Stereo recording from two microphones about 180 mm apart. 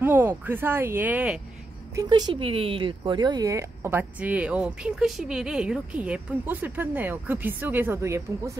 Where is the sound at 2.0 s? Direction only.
25° right (ahead or behind).